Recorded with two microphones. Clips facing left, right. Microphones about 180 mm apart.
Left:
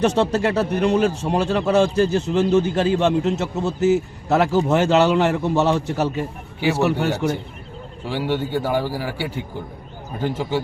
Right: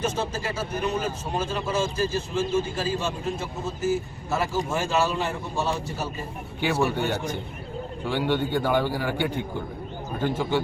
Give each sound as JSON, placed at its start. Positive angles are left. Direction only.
{"t": 0.0, "sound": "speech", "side_deg": 70}
{"t": 8.1, "sound": "a man's voice", "side_deg": 10}